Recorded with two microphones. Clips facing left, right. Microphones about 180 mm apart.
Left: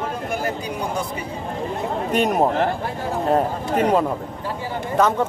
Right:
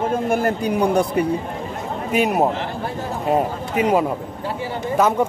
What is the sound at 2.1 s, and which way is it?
Speech, 5° right (ahead or behind).